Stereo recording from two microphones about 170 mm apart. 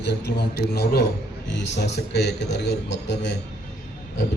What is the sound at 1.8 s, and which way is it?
A man's voice, 85° left.